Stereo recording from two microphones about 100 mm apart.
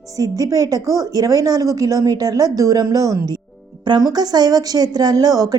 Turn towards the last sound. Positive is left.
turn(degrees=-40)  # may be behind; listen again after turning